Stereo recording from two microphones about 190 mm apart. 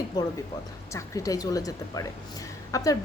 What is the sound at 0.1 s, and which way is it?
A woman's voice, 20° left (ahead or behind).